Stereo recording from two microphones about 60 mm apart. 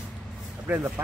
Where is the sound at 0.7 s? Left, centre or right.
Right.